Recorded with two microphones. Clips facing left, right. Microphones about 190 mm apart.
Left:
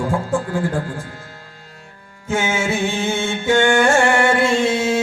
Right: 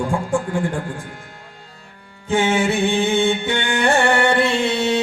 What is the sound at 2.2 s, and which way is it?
Music, 35° right (ahead or behind).